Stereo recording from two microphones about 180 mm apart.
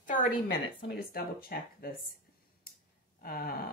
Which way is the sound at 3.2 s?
55° left (ahead or behind).